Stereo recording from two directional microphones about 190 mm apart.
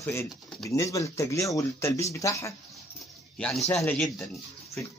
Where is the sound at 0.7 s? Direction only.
15° left (ahead or behind).